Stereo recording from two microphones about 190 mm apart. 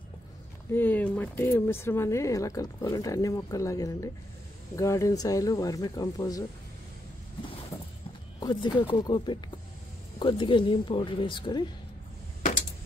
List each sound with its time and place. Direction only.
0.7 s speech: 10° left (ahead or behind)
8.4 s speech: 25° left (ahead or behind)